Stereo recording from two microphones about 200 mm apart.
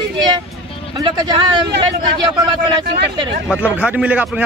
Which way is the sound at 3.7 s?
5° right (ahead or behind).